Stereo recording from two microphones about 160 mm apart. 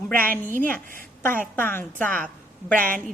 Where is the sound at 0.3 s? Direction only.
60° right (ahead or behind).